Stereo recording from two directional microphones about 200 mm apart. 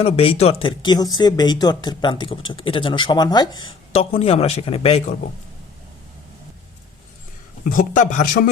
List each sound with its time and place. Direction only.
0.0 s speech: 30° left (ahead or behind)
7.6 s speech: 40° left (ahead or behind)